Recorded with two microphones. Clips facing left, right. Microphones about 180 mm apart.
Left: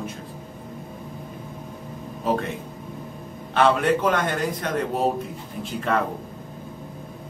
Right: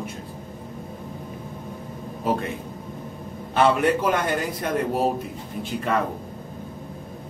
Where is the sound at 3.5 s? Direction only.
10° right (ahead or behind).